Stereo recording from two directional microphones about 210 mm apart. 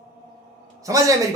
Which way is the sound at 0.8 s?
15° right (ahead or behind).